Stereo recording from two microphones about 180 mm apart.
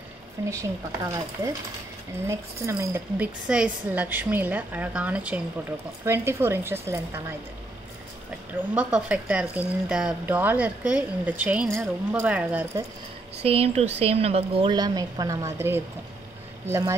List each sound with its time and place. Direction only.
0.5 s speech: 15° right (ahead or behind)
8.7 s speech: 5° right (ahead or behind)
13.4 s a woman's voice: 35° right (ahead or behind); by 15.8 s 15° right (ahead or behind)